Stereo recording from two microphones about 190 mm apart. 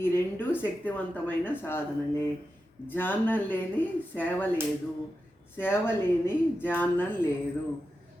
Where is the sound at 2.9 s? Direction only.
10° left (ahead or behind).